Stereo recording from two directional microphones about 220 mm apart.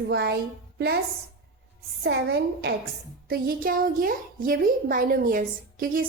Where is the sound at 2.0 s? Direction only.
50° right (ahead or behind).